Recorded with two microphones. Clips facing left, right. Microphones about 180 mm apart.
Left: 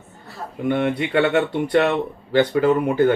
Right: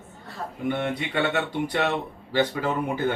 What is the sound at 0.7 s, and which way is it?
Speech, 60° left (ahead or behind).